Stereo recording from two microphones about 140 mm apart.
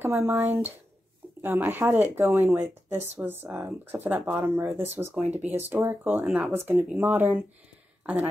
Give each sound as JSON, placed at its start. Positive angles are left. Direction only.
{"t": 0.0, "sound": "speech", "side_deg": -20}